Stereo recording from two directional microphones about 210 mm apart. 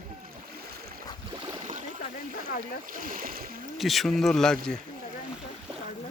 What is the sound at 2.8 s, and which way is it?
Speech, 40° right (ahead or behind).